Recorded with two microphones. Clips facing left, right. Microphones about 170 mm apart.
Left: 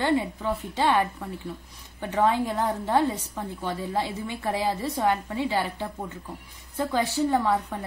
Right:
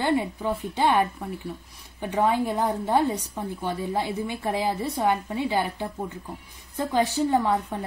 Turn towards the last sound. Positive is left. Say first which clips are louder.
# right 1 dB
turn(degrees=-15)  # may be behind; listen again after turning